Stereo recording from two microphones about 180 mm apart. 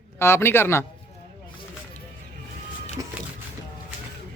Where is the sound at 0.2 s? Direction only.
15° left (ahead or behind).